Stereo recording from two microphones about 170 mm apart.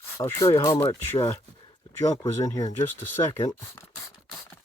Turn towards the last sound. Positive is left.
turn(degrees=15)  # may be behind; listen again after turning